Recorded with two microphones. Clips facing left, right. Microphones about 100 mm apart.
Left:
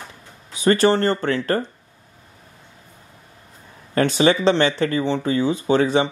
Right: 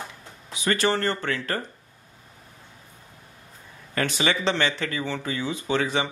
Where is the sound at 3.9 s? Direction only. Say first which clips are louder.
Left 8 dB; 35° left (ahead or behind).